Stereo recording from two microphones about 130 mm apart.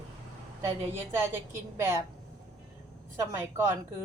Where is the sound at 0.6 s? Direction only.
20° right (ahead or behind).